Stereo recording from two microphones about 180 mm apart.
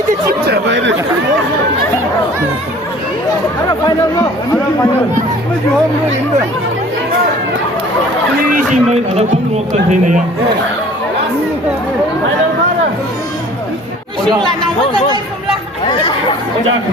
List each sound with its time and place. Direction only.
0.4 s speech: 70° right (ahead or behind)
8.5 s speech: 40° right (ahead or behind)